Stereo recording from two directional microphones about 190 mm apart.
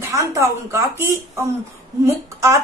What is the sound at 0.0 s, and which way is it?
Speech, 15° right (ahead or behind).